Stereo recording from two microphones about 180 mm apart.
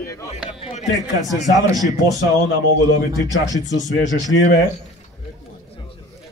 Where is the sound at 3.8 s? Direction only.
45° left (ahead or behind).